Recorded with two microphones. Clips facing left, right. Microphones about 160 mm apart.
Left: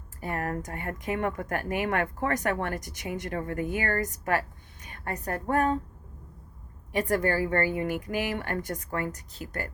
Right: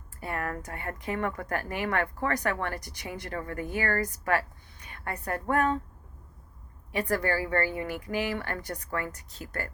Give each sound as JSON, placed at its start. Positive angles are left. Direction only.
{"t": 0.2, "sound": "speech", "side_deg": 40}
{"t": 0.9, "sound": "speech", "side_deg": 15}
{"t": 1.4, "sound": "speech", "side_deg": 45}
{"t": 3.2, "sound": "speech", "side_deg": 20}
{"t": 4.0, "sound": "a woman's voice", "side_deg": 45}
{"t": 6.9, "sound": "speech", "side_deg": 45}